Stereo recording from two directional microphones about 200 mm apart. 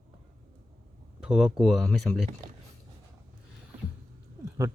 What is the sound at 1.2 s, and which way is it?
Speech, 5° right (ahead or behind).